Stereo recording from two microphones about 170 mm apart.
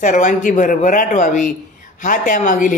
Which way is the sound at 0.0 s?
50° left (ahead or behind).